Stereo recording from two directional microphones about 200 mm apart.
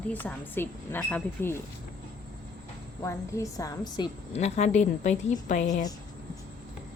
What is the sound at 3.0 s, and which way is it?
A woman's voice, 15° left (ahead or behind).